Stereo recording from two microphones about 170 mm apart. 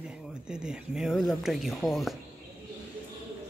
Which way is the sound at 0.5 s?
5° right (ahead or behind).